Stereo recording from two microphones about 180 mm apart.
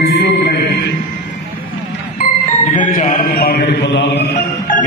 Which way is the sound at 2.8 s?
45° left (ahead or behind).